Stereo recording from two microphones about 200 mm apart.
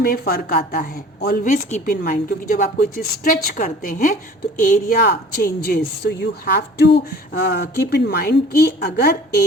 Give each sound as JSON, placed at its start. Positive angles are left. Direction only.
{"t": 0.0, "sound": "a woman's voice", "side_deg": 50}